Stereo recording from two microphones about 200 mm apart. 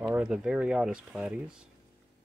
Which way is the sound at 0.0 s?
10° right (ahead or behind).